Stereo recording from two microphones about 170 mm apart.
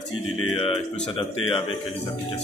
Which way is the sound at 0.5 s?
35° left (ahead or behind).